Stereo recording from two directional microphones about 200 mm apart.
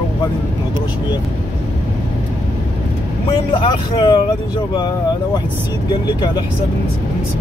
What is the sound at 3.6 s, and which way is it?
Speech, 25° left (ahead or behind).